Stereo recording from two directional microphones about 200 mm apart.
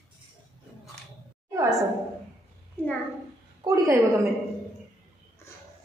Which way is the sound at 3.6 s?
15° right (ahead or behind).